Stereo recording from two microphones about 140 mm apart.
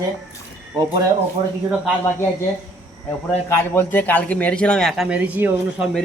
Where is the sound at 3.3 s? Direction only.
15° left (ahead or behind); by 5.8 s 10° right (ahead or behind).